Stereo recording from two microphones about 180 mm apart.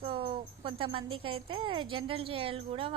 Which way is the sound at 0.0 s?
30° right (ahead or behind).